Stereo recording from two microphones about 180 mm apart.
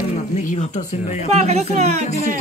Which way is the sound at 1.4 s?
35° right (ahead or behind).